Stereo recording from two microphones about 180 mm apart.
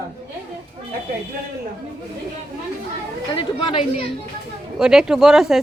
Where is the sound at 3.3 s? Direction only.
25° left (ahead or behind).